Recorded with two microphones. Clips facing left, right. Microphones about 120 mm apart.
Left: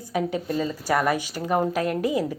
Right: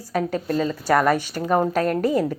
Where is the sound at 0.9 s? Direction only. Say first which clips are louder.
Right 4 dB; 50° right (ahead or behind).